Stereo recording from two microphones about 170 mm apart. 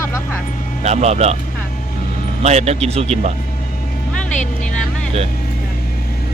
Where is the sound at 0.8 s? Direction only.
40° right (ahead or behind).